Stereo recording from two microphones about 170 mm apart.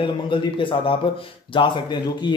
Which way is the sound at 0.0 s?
30° left (ahead or behind).